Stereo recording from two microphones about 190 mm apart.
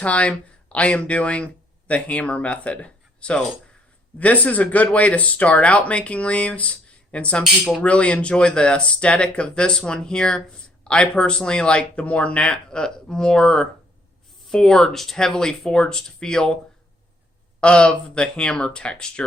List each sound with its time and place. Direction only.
0.0 s speech: 5° left (ahead or behind)
17.6 s speech: 5° left (ahead or behind)